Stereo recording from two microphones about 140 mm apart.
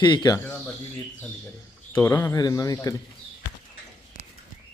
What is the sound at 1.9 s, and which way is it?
Speech, 20° left (ahead or behind).